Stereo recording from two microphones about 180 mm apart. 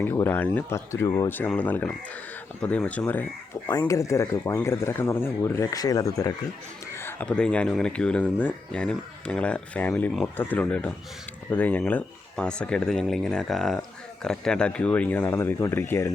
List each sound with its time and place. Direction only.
0.0 s speech: 10° left (ahead or behind)